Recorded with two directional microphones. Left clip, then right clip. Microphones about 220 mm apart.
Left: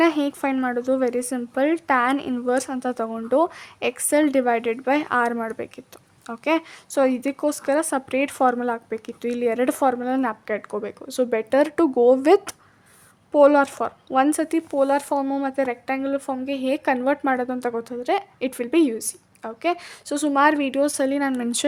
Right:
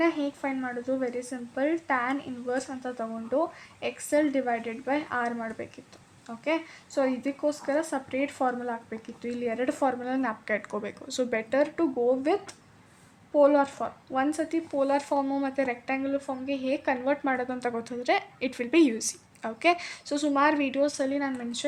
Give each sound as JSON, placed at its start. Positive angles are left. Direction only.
{"t": 0.0, "sound": "speech", "side_deg": 35}